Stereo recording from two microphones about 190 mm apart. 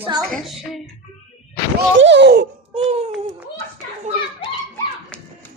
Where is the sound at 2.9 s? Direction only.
30° right (ahead or behind).